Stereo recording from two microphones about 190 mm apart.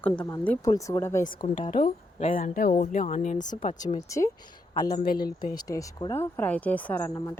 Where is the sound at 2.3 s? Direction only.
45° left (ahead or behind).